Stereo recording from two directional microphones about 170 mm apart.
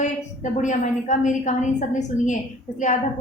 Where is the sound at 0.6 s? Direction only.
45° left (ahead or behind).